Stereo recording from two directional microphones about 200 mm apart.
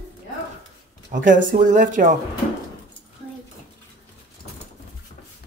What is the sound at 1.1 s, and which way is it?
Speech, 40° right (ahead or behind).